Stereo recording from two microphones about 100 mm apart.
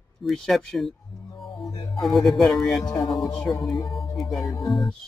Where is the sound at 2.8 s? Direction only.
40° left (ahead or behind).